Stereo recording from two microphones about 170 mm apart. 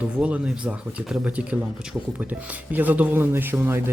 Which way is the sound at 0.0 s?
10° right (ahead or behind).